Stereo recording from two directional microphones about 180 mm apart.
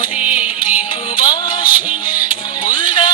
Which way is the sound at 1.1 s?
25° left (ahead or behind).